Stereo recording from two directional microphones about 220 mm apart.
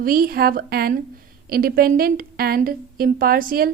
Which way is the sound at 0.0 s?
40° right (ahead or behind).